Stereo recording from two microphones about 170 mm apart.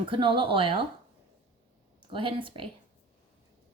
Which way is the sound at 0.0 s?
30° right (ahead or behind).